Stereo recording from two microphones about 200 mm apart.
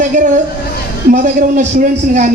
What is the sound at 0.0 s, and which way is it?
A woman's voice, 40° right (ahead or behind).